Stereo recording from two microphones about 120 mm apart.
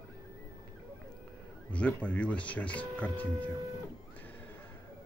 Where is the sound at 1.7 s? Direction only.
10° left (ahead or behind).